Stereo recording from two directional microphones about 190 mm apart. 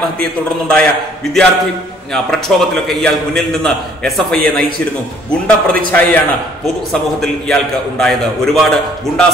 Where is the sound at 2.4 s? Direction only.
Centre (ahead or behind).